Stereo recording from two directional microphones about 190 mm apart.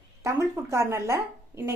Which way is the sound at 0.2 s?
15° right (ahead or behind).